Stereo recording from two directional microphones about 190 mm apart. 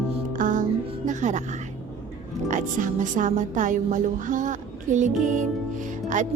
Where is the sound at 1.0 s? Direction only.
40° right (ahead or behind).